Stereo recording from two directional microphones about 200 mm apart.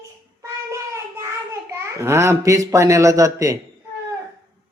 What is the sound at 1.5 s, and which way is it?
A child's voice, 15° right (ahead or behind).